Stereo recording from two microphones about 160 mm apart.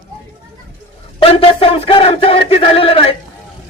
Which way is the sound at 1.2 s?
35° left (ahead or behind).